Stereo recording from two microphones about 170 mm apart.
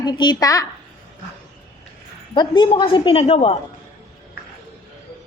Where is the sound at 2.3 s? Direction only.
30° left (ahead or behind).